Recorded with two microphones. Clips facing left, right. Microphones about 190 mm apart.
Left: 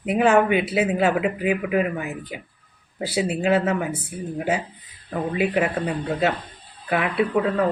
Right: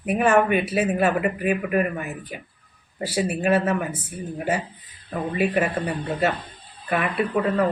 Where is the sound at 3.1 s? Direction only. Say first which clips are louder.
Left 1 dB; 15° left (ahead or behind).